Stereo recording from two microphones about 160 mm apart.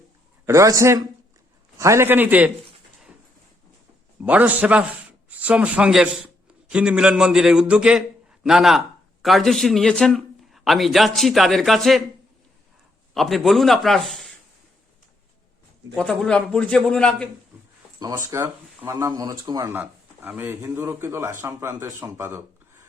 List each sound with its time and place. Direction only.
0.4 s a man's voice: 20° right (ahead or behind)
4.2 s a man's voice: 10° right (ahead or behind)
13.1 s a man's voice: centre (ahead or behind)
16.0 s a man's voice: 5° left (ahead or behind)
18.0 s speech: 20° right (ahead or behind)